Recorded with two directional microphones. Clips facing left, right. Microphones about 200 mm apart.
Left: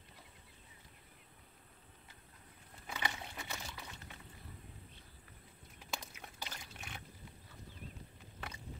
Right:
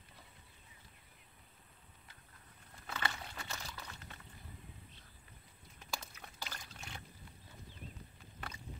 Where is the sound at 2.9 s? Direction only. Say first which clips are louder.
Even; 15° left (ahead or behind).